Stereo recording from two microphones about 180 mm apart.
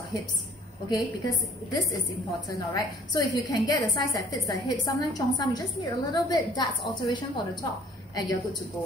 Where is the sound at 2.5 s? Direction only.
20° left (ahead or behind).